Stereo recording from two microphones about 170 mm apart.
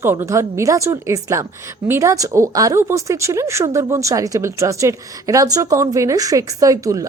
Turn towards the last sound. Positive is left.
turn(degrees=-20)  # may be behind; listen again after turning